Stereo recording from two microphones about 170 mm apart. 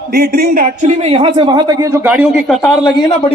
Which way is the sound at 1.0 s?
35° right (ahead or behind).